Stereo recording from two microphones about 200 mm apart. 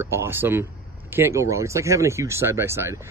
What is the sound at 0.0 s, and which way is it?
Speech, 10° right (ahead or behind).